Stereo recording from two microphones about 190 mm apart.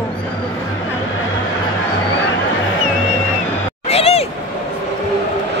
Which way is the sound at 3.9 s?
30° left (ahead or behind).